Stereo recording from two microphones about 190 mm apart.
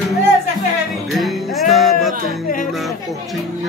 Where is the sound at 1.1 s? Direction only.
Centre (ahead or behind).